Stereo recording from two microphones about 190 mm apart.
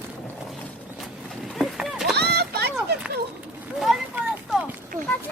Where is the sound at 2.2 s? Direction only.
60° right (ahead or behind).